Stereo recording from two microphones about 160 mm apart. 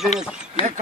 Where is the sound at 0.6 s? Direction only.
35° left (ahead or behind).